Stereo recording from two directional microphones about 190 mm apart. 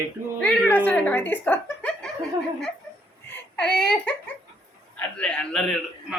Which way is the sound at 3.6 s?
5° left (ahead or behind).